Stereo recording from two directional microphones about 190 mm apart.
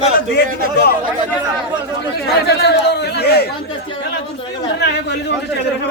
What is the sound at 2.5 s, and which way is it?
Speech, 60° left (ahead or behind).